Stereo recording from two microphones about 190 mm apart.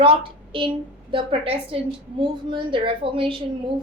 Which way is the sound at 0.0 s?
30° right (ahead or behind).